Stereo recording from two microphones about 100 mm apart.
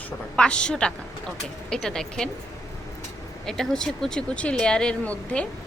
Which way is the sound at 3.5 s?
5° left (ahead or behind).